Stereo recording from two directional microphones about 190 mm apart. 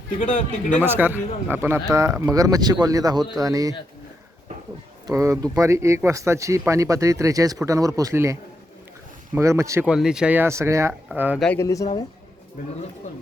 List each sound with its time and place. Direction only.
0.2 s speech: 40° left (ahead or behind)
0.8 s speech: 10° right (ahead or behind)
5.0 s speech: 15° right (ahead or behind)
9.9 s speech: 5° right (ahead or behind)
11.4 s speech: 15° left (ahead or behind)